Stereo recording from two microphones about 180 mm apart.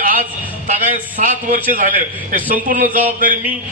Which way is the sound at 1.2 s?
45° right (ahead or behind).